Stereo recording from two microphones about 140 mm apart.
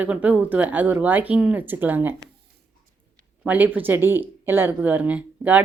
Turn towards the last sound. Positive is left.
turn(degrees=-10)  # may be behind; listen again after turning